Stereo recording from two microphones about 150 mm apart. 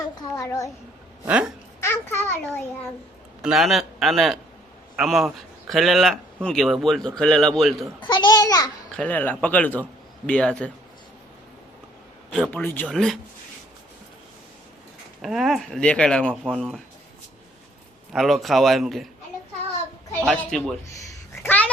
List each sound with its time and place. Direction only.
0.3 s a child's voice: 20° left (ahead or behind)
1.3 s speech: 10° right (ahead or behind)
1.8 s speech: 15° left (ahead or behind)
3.4 s a man's voice: centre (ahead or behind)
8.0 s a child's voice: 30° left (ahead or behind)
8.9 s speech: 10° left (ahead or behind)
12.3 s a man's voice: 5° left (ahead or behind)
15.2 s a man's voice: centre (ahead or behind)
18.1 s a man's voice: centre (ahead or behind)
20.2 s a man's voice: 5° left (ahead or behind)
21.4 s dog: 10° left (ahead or behind)